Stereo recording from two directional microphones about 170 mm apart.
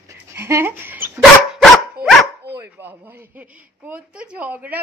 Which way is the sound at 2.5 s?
10° right (ahead or behind).